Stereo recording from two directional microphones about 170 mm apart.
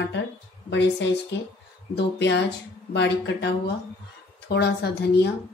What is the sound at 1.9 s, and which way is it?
Speech, 90° left.